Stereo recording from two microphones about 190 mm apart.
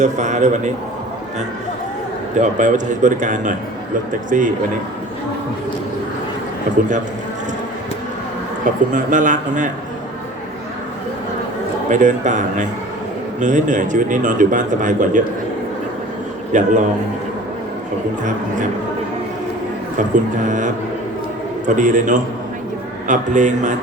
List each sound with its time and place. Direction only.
0.0 s a man's voice: 40° right (ahead or behind)
2.4 s a man's voice: 40° right (ahead or behind)
8.6 s a man's voice: 45° right (ahead or behind)
11.9 s a man's voice: 40° right (ahead or behind)
16.5 s a man's voice: 40° right (ahead or behind)
20.5 s a man's voice: 40° right (ahead or behind)
21.8 s a man's voice: 40° right (ahead or behind)